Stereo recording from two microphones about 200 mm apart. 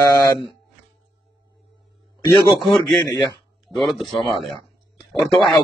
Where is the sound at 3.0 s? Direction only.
20° left (ahead or behind).